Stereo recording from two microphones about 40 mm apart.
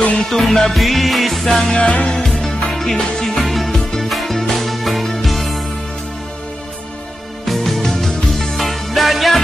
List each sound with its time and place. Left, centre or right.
0.3 s music: centre
1.7 s music: left
2.2 s music: centre
7.4 s music: centre